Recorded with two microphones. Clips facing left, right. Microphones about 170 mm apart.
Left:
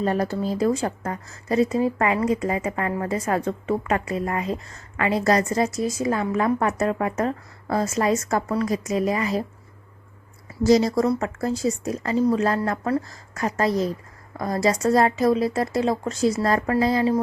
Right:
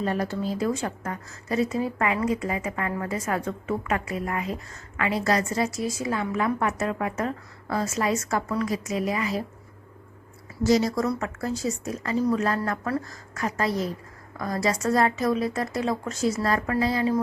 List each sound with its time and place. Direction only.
0.0 s a woman's voice: 40° left (ahead or behind)
10.6 s a woman's voice: 35° left (ahead or behind)